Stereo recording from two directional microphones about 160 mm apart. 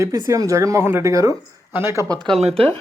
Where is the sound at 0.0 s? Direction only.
20° right (ahead or behind).